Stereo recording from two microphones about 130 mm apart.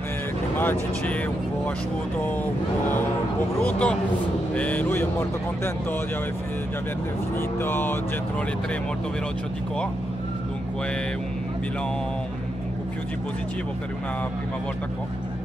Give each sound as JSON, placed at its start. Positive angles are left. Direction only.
{"t": 0.6, "sound": "mantra", "side_deg": 15}
{"t": 3.6, "sound": "mantra", "side_deg": 10}
{"t": 7.3, "sound": "mantra", "side_deg": 15}